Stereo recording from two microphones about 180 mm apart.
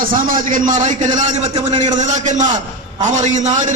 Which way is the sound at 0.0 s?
50° right (ahead or behind).